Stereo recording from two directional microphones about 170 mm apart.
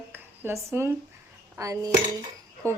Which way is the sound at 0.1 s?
15° right (ahead or behind).